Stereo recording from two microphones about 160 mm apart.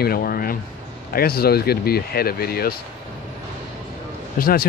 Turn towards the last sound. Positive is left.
turn(degrees=65)  # may be behind; listen again after turning